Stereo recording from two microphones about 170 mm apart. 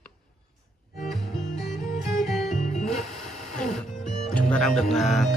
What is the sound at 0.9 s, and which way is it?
Music, centre (ahead or behind).